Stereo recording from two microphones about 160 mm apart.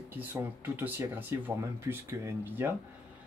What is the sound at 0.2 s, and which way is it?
Speech, 10° right (ahead or behind).